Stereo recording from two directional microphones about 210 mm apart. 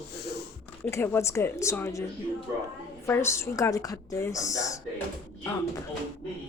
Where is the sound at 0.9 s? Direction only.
10° left (ahead or behind).